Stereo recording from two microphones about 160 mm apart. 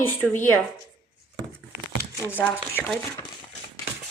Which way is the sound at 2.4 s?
5° left (ahead or behind).